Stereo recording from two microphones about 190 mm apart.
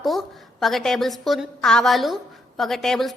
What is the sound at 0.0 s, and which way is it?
A woman's voice, centre (ahead or behind).